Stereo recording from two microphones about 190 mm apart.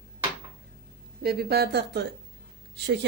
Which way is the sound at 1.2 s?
55° right (ahead or behind).